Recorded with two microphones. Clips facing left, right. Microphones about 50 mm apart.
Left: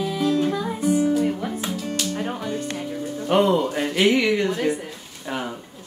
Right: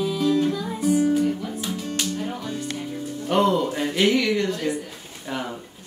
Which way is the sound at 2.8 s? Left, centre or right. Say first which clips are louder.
Left 2 dB; centre.